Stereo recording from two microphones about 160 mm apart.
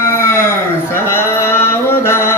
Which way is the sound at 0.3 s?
15° left (ahead or behind).